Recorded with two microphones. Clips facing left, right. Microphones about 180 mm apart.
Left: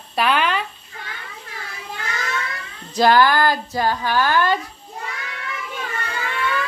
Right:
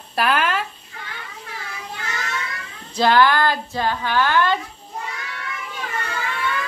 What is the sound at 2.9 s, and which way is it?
Speech, 10° left (ahead or behind).